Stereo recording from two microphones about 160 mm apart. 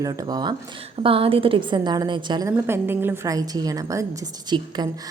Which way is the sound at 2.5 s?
15° right (ahead or behind).